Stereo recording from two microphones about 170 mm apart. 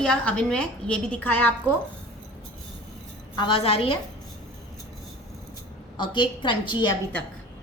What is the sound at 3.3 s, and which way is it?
Speech, 30° left (ahead or behind).